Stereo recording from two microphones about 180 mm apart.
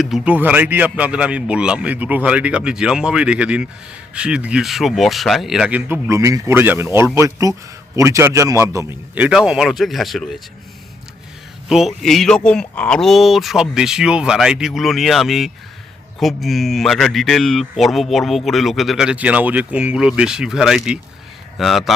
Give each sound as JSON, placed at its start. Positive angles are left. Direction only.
{"t": 0.0, "sound": "a man's voice", "side_deg": -5}
{"t": 11.7, "sound": "a man's voice", "side_deg": 0}